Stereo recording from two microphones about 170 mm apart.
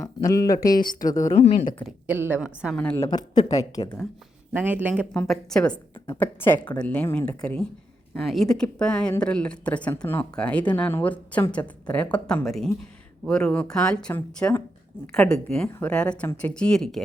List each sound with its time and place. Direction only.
0.0 s speech: 20° left (ahead or behind)
0.9 s speech: 50° left (ahead or behind)
1.4 s speech: 40° left (ahead or behind)
2.0 s a woman's voice: 10° right (ahead or behind)
2.7 s speech: 5° left (ahead or behind)
3.0 s speech: 25° left (ahead or behind)
4.5 s a woman's voice: 10° right (ahead or behind)
5.1 s speech: 5° left (ahead or behind)